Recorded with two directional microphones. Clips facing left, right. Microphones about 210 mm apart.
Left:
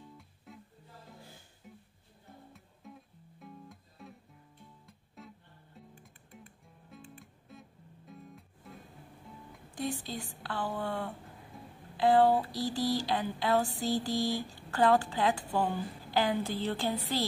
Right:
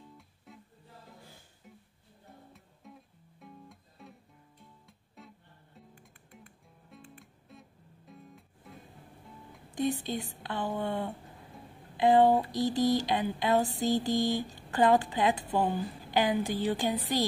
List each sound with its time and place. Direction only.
0.5 s music: centre (ahead or behind)
2.5 s music: centre (ahead or behind)
6.9 s music: centre (ahead or behind)
10.0 s a sound: 20° right (ahead or behind)
15.5 s a woman's voice: 15° right (ahead or behind)